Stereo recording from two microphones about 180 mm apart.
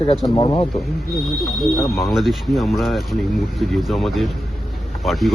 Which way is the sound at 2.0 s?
Centre (ahead or behind).